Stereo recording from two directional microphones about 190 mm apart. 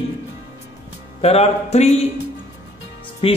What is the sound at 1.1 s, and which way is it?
Speech, 35° left (ahead or behind).